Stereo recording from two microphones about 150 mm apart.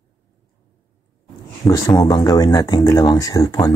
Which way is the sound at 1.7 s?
25° left (ahead or behind).